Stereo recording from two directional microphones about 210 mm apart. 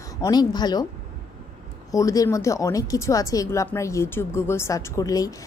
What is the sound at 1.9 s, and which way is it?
Speech, 15° left (ahead or behind).